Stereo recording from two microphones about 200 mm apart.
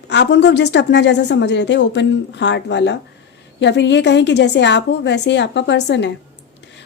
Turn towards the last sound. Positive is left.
turn(degrees=60)  # may be behind; listen again after turning